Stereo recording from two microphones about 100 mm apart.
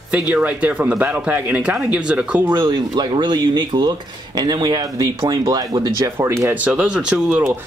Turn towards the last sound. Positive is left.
turn(degrees=-15)  # may be behind; listen again after turning